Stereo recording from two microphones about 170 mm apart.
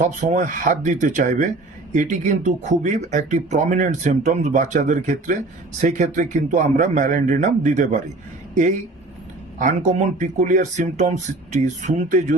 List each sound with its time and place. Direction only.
0.0 s speech: 45° right (ahead or behind)
9.6 s speech: 45° right (ahead or behind)